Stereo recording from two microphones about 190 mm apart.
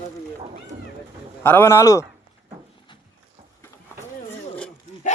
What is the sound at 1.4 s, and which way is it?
Speech, 10° left (ahead or behind).